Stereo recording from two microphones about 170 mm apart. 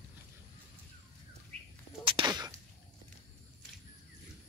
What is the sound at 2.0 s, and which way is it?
Whip, 30° right (ahead or behind).